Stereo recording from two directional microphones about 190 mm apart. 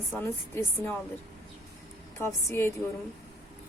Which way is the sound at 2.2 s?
15° left (ahead or behind).